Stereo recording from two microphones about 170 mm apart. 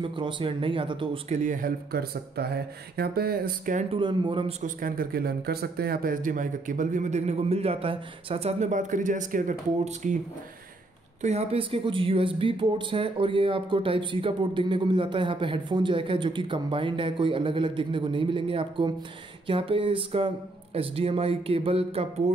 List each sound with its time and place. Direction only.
0.0 s speech: 30° right (ahead or behind)
1.4 s speech: 55° right (ahead or behind)
3.9 s a man's voice: 30° right (ahead or behind); by 10.1 s 50° right (ahead or behind)
11.1 s speech: 40° right (ahead or behind)